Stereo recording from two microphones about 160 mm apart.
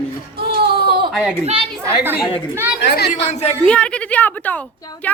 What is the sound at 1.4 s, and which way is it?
Speech, 35° right (ahead or behind).